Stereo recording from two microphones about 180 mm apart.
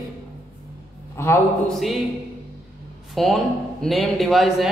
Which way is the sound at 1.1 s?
15° left (ahead or behind).